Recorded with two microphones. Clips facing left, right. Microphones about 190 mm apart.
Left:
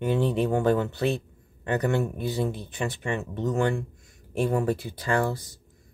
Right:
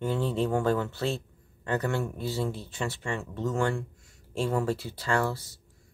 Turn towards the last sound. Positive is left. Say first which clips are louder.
# left 2 dB
turn(degrees=15)  # may be behind; listen again after turning